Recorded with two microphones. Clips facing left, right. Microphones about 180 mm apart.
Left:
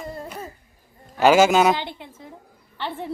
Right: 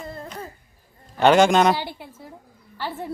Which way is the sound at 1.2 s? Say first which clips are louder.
Even; 5° left (ahead or behind).